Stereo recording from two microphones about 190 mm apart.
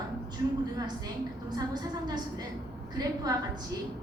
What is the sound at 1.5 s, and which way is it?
Speech, 20° right (ahead or behind).